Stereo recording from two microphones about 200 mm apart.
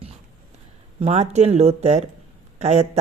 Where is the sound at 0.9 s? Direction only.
35° right (ahead or behind).